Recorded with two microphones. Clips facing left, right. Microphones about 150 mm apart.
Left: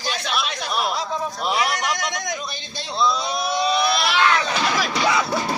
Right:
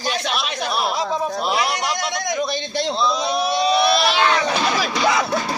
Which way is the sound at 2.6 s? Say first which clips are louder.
Right 12 dB; 75° right (ahead or behind).